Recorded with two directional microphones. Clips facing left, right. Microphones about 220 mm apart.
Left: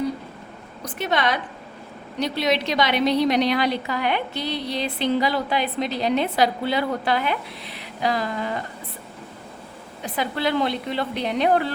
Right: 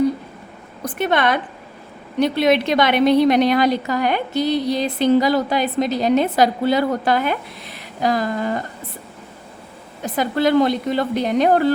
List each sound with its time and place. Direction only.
0.9 s a woman's voice: 55° right (ahead or behind)
10.0 s a woman's voice: 45° right (ahead or behind)